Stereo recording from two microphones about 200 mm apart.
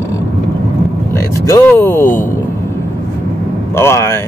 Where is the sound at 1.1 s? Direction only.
15° left (ahead or behind).